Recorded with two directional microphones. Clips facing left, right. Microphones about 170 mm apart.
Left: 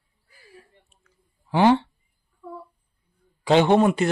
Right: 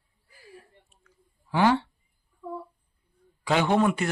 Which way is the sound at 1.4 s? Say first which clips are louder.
Left 4 dB; 25° left (ahead or behind).